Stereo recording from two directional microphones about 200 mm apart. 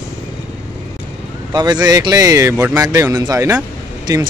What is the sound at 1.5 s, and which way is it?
A man's voice, 20° right (ahead or behind).